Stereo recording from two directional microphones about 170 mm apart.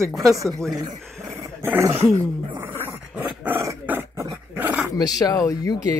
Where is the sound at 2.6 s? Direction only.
10° right (ahead or behind).